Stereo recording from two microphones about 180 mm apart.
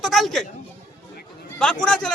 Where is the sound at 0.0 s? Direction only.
Centre (ahead or behind).